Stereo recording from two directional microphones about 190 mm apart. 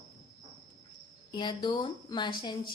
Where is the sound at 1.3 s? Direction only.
25° left (ahead or behind).